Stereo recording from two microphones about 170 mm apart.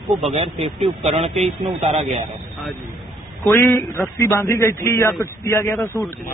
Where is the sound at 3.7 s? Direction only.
15° left (ahead or behind).